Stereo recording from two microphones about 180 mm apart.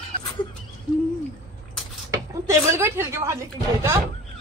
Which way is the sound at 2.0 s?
15° right (ahead or behind).